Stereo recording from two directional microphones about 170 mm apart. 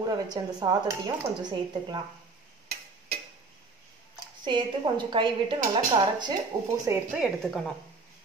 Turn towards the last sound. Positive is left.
turn(degrees=0)  # may be behind; listen again after turning